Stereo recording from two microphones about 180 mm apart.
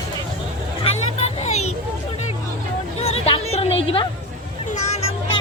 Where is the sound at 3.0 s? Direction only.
35° left (ahead or behind).